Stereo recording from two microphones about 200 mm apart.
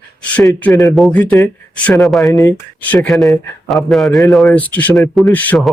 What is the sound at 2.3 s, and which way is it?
Speech, 20° left (ahead or behind).